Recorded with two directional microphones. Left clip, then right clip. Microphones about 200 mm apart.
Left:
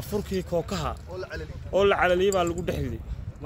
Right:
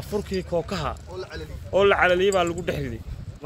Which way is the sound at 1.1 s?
50° right (ahead or behind).